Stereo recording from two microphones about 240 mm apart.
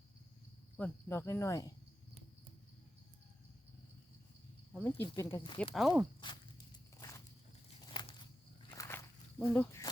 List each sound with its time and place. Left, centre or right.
0.8 s speech: centre
4.8 s speech: centre
5.7 s speech: centre
7.9 s a sound: centre
9.5 s speech: centre